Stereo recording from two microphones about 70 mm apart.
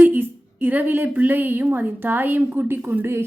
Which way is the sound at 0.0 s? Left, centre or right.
Right.